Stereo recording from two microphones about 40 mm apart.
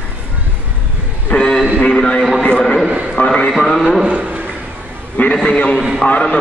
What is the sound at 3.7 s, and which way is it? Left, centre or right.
Speech, centre.